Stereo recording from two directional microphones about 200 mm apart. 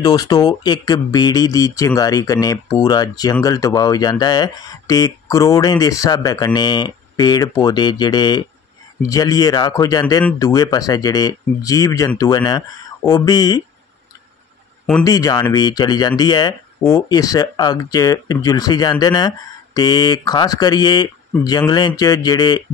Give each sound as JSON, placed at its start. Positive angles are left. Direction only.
{"t": 0.0, "sound": "speech", "side_deg": 20}
{"t": 15.0, "sound": "speech", "side_deg": 15}